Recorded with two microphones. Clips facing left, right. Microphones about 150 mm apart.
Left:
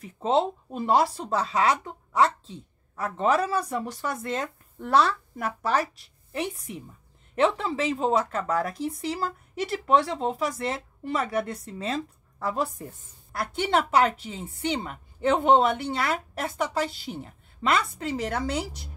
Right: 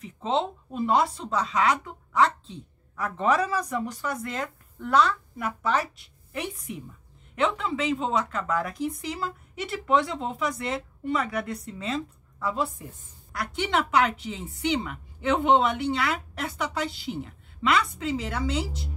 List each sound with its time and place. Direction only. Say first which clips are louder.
0.0 s a woman's voice: left 3 dB; 35° left (ahead or behind)